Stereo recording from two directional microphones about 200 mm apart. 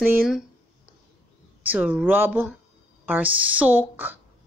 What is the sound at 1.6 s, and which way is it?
A woman's voice, 5° right (ahead or behind).